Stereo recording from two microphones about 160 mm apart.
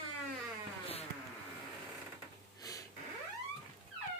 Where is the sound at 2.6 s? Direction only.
20° left (ahead or behind).